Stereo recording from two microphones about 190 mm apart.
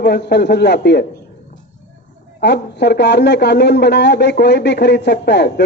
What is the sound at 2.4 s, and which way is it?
Speech, 60° left (ahead or behind).